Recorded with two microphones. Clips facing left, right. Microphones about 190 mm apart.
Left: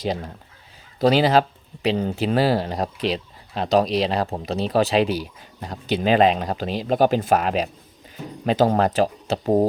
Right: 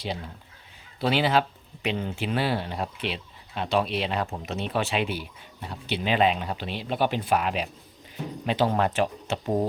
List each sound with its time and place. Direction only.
0.0 s speech: 45° left (ahead or behind)